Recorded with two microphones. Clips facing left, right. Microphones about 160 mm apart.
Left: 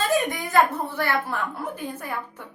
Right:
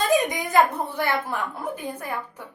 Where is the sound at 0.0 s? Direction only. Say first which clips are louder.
Right 2 dB; 15° right (ahead or behind).